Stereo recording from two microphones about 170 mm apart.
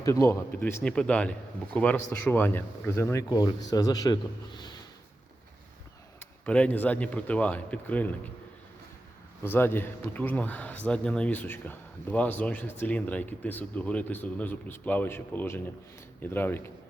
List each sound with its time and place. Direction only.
0.0 s speech: 20° left (ahead or behind)
6.1 s speech: 10° left (ahead or behind)
9.4 s speech: 10° left (ahead or behind)